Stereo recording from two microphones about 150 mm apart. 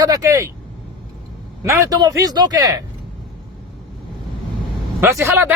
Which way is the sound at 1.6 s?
20° right (ahead or behind).